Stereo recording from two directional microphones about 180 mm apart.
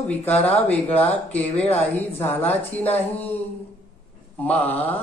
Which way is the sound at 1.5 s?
35° left (ahead or behind).